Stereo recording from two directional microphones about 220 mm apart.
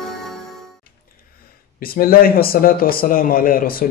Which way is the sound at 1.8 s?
40° left (ahead or behind).